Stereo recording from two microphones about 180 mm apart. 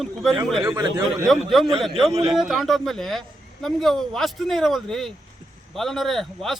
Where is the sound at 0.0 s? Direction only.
Centre (ahead or behind).